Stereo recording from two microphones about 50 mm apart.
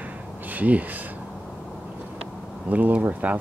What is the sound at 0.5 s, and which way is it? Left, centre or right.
Speech, right.